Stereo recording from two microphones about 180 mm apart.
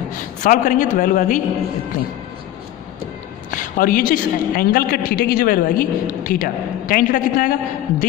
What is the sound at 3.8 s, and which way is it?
A man's voice, 50° left (ahead or behind).